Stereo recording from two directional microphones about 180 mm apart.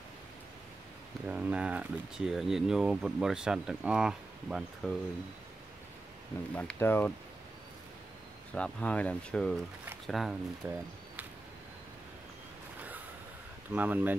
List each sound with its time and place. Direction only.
1.2 s speech: 5° right (ahead or behind)
6.5 s speech: 10° left (ahead or behind)
8.5 s speech: 5° left (ahead or behind); by 10.8 s 10° right (ahead or behind)
13.7 s speech: 10° right (ahead or behind)